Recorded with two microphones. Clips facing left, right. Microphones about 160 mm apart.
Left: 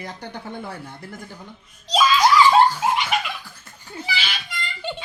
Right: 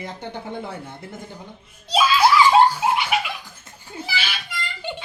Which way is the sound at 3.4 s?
20° right (ahead or behind).